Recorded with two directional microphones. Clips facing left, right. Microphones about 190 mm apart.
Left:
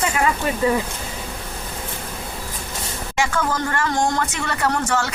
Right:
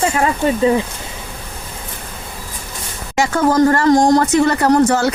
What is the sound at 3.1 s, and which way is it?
Speech, 40° right (ahead or behind).